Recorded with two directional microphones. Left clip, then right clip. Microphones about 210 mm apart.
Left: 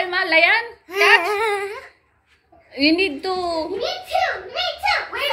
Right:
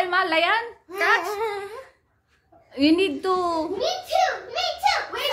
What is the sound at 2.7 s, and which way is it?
Speech, 15° right (ahead or behind).